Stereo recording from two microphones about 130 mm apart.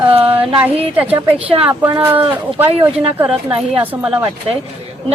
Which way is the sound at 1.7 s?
15° right (ahead or behind).